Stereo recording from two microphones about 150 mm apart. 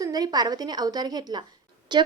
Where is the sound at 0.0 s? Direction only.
25° right (ahead or behind).